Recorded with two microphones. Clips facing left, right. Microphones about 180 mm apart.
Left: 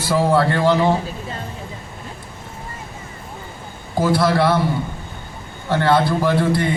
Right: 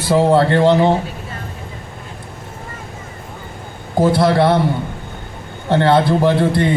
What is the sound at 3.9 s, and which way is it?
Speech, 20° right (ahead or behind).